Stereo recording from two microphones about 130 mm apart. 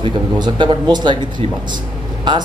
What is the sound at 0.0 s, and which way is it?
A man's voice, 40° right (ahead or behind).